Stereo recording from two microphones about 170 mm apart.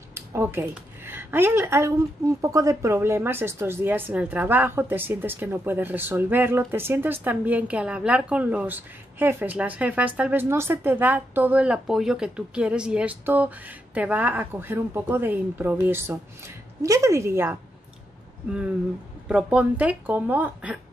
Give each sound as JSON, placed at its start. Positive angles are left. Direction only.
{"t": 0.1, "sound": "speech", "side_deg": -15}
{"t": 19.2, "sound": "speech", "side_deg": -5}